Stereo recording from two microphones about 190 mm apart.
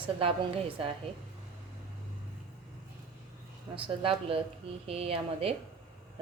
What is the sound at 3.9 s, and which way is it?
A woman's voice, 30° right (ahead or behind).